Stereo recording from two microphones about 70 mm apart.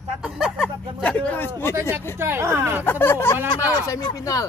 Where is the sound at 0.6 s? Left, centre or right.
Centre.